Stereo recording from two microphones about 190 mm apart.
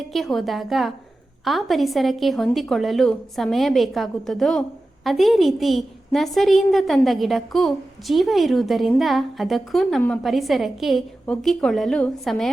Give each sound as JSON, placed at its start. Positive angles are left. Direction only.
{"t": 0.1, "sound": "a woman's voice", "side_deg": 0}